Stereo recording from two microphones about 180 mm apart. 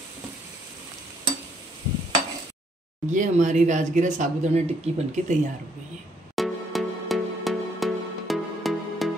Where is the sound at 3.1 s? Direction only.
45° right (ahead or behind).